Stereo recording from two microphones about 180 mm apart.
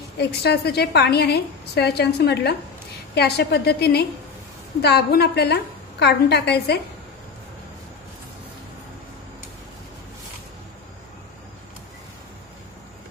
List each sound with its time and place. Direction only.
0.2 s a woman's voice: 65° left (ahead or behind)